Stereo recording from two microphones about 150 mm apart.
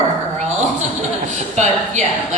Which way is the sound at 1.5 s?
50° right (ahead or behind).